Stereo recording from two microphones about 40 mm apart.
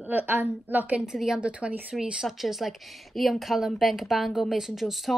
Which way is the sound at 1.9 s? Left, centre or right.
Centre.